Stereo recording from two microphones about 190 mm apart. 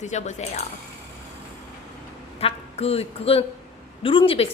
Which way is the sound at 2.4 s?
30° left (ahead or behind).